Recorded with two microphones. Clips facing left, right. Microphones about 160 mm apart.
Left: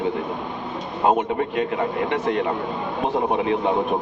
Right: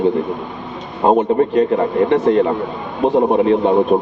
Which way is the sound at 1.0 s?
35° right (ahead or behind).